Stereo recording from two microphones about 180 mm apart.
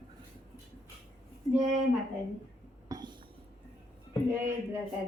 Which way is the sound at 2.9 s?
25° right (ahead or behind).